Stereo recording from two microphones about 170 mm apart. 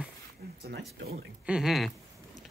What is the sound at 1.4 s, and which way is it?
Speech, 5° right (ahead or behind).